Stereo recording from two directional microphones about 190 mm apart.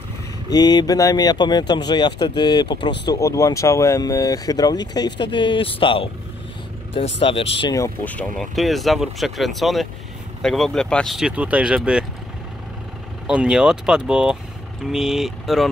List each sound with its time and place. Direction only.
0.5 s speech: 20° left (ahead or behind)
7.2 s speech: 30° left (ahead or behind)
7.7 s speech: 10° left (ahead or behind); by 12.1 s 5° right (ahead or behind)
13.3 s speech: 5° right (ahead or behind)